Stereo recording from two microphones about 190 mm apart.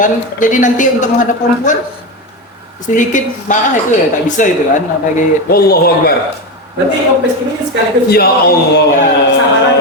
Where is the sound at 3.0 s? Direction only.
40° left (ahead or behind).